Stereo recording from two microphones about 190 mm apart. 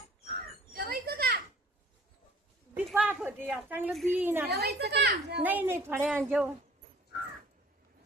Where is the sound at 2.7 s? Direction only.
10° right (ahead or behind).